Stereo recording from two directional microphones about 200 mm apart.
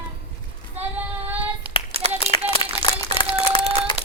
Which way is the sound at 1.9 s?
30° right (ahead or behind).